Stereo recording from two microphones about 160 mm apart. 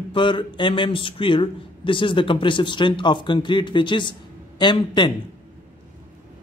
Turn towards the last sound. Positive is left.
turn(degrees=30)  # may be behind; listen again after turning